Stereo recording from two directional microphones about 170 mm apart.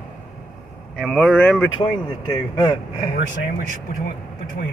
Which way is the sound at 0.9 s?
5° left (ahead or behind).